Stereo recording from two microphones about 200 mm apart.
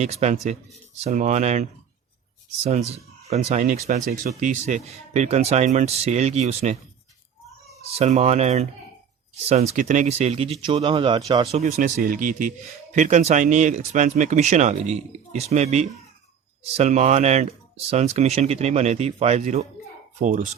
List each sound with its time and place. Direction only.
0.0 s speech: 35° right (ahead or behind)
2.6 s speech: 30° right (ahead or behind)
7.8 s speech: 30° right (ahead or behind)
11.8 s speech: 40° right (ahead or behind)